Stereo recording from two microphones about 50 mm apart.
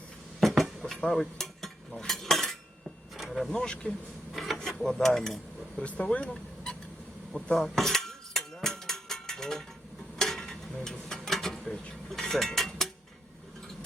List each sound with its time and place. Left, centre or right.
0.3 s a sound: centre
0.9 s stir: centre
2.0 s cutlery: centre
3.2 s vehicle: centre
3.5 s speech: centre
4.3 s a sound: centre
4.8 s dishes: centre
5.7 s speech: left
7.3 s speech: left
7.8 s mechanisms: centre
10.2 s a sound: centre